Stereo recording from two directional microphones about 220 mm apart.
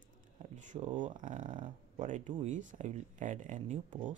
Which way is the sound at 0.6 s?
35° right (ahead or behind).